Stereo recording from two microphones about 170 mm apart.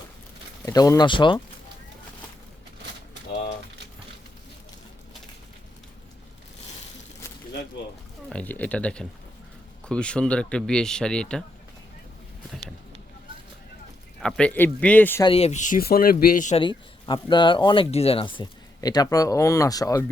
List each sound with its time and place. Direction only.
0.6 s speech: 20° left (ahead or behind)
8.3 s speech: 10° left (ahead or behind)
14.2 s speech: 5° left (ahead or behind)
15.2 s speech: 35° left (ahead or behind); by 16.6 s 50° left (ahead or behind)
16.6 s speech: 30° left (ahead or behind)